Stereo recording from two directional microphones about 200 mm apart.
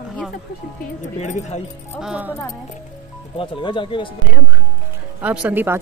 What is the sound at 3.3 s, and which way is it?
Speech, 25° left (ahead or behind).